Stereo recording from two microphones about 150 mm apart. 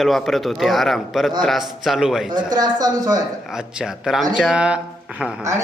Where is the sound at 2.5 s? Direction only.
25° right (ahead or behind).